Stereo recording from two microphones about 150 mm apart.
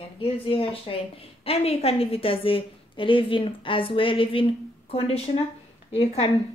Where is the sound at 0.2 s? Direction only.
35° left (ahead or behind).